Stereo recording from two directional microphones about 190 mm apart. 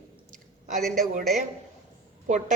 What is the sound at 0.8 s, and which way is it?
Speech, centre (ahead or behind).